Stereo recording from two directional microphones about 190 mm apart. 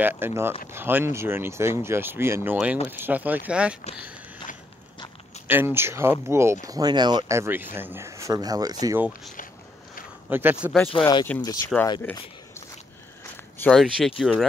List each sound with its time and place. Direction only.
0.0 s speech: 10° right (ahead or behind)
5.5 s speech: 10° right (ahead or behind)
10.3 s speech: 10° right (ahead or behind)
11.3 s speech: 10° left (ahead or behind)
13.6 s speech: centre (ahead or behind)